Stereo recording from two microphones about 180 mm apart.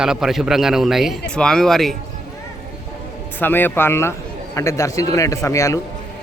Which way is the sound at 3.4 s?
10° left (ahead or behind).